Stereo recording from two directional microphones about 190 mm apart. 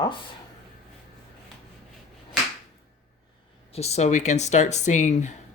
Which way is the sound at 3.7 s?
35° left (ahead or behind).